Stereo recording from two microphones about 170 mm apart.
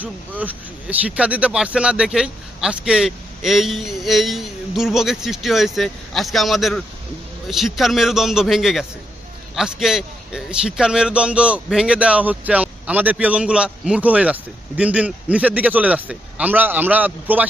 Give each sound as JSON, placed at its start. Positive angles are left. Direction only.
{"t": 0.0, "sound": "a man's voice", "side_deg": -10}